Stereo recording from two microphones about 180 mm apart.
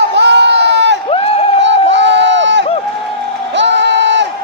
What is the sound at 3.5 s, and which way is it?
Music, 85° right.